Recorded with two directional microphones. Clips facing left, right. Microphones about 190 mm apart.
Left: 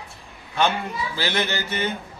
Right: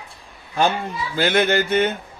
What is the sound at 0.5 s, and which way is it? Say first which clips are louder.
Speech: right 2 dB; 40° right (ahead or behind).